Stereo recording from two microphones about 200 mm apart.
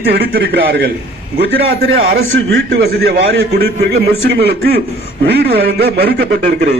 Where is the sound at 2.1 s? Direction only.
55° right (ahead or behind).